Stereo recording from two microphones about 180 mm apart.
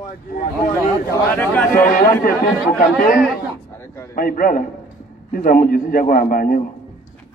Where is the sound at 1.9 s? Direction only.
55° left (ahead or behind).